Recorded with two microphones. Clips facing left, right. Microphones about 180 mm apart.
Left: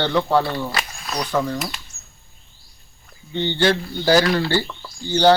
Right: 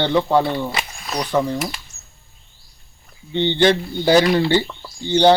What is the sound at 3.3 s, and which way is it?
Speech, 20° right (ahead or behind).